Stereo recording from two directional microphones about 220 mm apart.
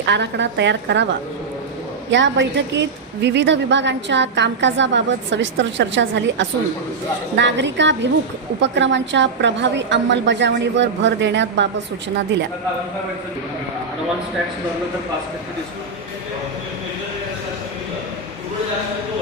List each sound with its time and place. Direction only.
0.0 s a woman's voice: 50° right (ahead or behind)
2.0 s a woman's voice: 55° right (ahead or behind)